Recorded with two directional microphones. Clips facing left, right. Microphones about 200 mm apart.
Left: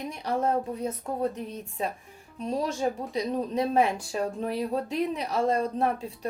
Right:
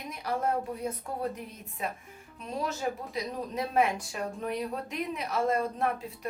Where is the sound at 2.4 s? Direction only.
35° left (ahead or behind).